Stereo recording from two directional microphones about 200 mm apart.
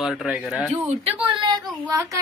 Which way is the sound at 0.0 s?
Centre (ahead or behind).